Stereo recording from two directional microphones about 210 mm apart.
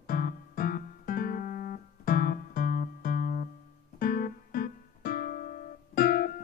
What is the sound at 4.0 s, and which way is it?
Music, 45° left (ahead or behind).